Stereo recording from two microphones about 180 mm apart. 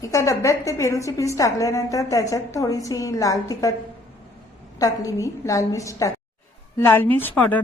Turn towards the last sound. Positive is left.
turn(degrees=10)  # may be behind; listen again after turning